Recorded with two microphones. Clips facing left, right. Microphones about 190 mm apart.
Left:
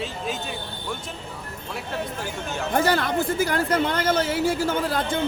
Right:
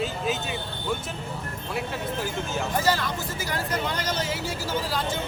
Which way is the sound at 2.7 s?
60° left (ahead or behind).